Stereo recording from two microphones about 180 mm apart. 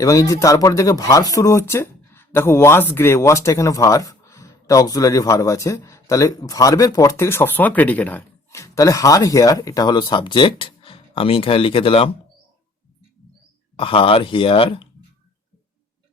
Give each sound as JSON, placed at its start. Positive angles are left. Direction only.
{"t": 0.0, "sound": "speech", "side_deg": 20}
{"t": 13.7, "sound": "speech", "side_deg": 30}